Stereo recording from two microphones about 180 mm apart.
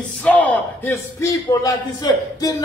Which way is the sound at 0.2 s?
10° left (ahead or behind).